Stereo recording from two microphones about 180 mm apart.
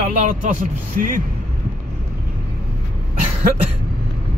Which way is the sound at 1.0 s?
50° right (ahead or behind).